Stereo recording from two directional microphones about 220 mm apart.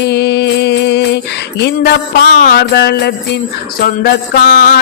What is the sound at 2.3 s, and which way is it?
Music, 40° left (ahead or behind).